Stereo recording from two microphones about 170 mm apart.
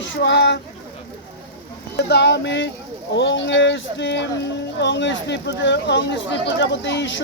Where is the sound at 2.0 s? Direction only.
85° left.